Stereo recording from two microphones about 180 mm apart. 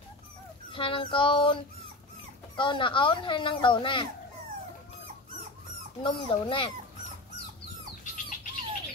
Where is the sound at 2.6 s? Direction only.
30° left (ahead or behind).